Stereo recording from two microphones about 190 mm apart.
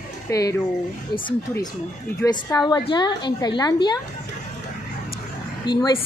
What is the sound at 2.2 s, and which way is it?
A woman's voice, 20° left (ahead or behind).